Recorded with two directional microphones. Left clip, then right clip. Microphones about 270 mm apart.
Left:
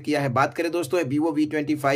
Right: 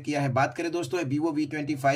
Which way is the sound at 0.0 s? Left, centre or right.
Centre.